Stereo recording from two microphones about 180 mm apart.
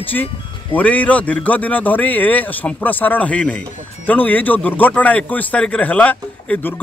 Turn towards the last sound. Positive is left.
turn(degrees=10)  # may be behind; listen again after turning